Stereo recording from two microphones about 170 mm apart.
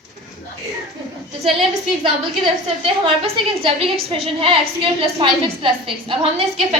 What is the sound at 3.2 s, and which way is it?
A woman's voice, 35° right (ahead or behind).